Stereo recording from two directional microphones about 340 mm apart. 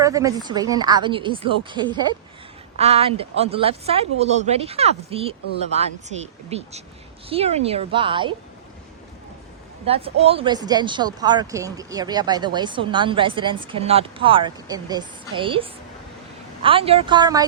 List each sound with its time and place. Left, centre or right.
0.0 s speech: centre
6.5 s speech: centre
9.8 s speech: centre